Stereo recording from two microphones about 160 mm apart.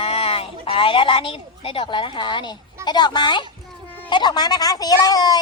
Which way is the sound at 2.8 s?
25° left (ahead or behind).